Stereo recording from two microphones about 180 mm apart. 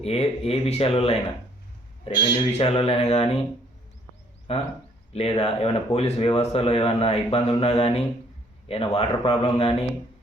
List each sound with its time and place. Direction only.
0.0 s speech: 35° left (ahead or behind)
4.5 s speech: 35° left (ahead or behind)